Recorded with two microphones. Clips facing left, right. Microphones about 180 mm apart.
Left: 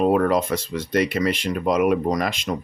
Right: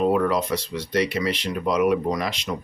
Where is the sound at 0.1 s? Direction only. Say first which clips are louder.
Left 2 dB; 50° left (ahead or behind).